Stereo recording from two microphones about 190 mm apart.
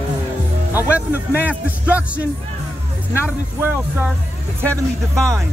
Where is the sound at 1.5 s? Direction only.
5° right (ahead or behind).